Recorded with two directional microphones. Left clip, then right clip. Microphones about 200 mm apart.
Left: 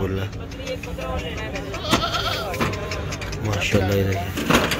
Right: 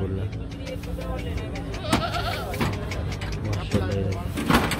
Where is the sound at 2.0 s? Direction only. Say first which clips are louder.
Left 4 dB; 40° left (ahead or behind).